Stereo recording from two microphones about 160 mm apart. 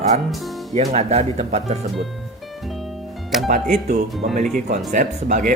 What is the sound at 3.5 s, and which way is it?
Speech, 55° right (ahead or behind).